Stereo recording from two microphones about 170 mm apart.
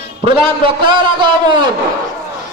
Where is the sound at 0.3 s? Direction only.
30° right (ahead or behind).